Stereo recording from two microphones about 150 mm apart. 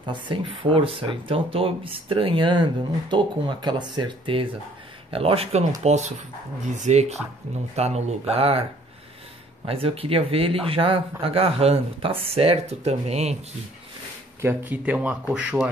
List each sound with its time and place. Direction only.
0.0 s speech: 30° right (ahead or behind)
9.7 s speech: 40° right (ahead or behind)
14.4 s speech: 15° right (ahead or behind)